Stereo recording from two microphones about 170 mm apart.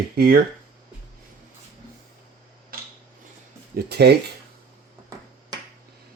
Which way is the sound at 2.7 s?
60° right (ahead or behind).